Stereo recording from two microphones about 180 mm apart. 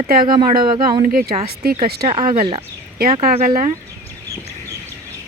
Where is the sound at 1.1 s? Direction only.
55° right (ahead or behind).